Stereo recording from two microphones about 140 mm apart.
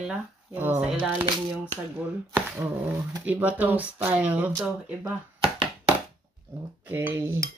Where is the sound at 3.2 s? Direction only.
10° right (ahead or behind).